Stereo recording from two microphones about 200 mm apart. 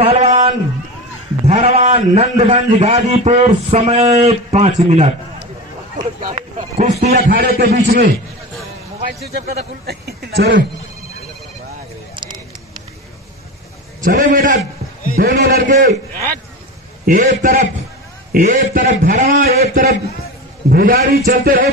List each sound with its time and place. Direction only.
0.0 s a sound: 30° right (ahead or behind)
2.1 s a man's voice: 30° right (ahead or behind)
7.1 s a man's voice: 50° right (ahead or behind)
14.0 s a man's voice: 40° right (ahead or behind)